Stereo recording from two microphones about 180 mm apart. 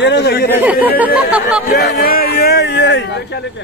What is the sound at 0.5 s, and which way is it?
Speech, 10° right (ahead or behind).